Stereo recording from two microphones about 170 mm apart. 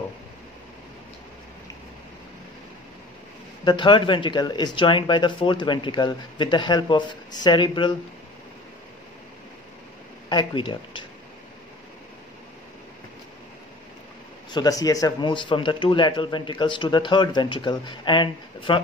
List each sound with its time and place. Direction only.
3.6 s speech: 30° left (ahead or behind)
10.3 s speech: 30° left (ahead or behind)
14.5 s speech: 20° left (ahead or behind)